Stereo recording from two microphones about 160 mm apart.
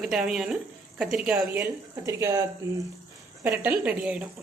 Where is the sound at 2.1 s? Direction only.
20° right (ahead or behind).